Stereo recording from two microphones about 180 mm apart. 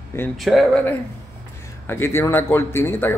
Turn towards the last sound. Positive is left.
turn(degrees=10)  # may be behind; listen again after turning